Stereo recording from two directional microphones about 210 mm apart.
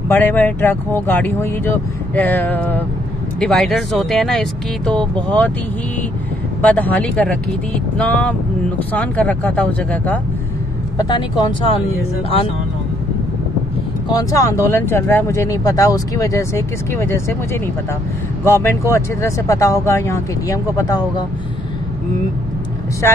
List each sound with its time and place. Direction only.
0.1 s speech: 10° left (ahead or behind)
6.6 s speech: 10° left (ahead or behind)
11.0 s speech: 20° left (ahead or behind)
14.1 s speech: 15° left (ahead or behind)
18.4 s speech: 10° left (ahead or behind)